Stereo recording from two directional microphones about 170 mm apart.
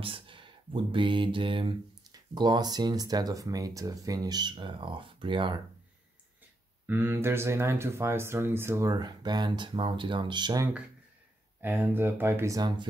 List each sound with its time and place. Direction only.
0.0 s a sound: 30° right (ahead or behind)
0.9 s speech: 30° right (ahead or behind)
6.9 s speech: 10° right (ahead or behind)
11.6 s speech: 10° right (ahead or behind)